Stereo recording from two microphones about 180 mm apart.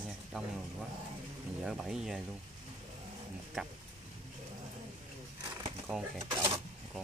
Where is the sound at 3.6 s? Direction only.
5° right (ahead or behind).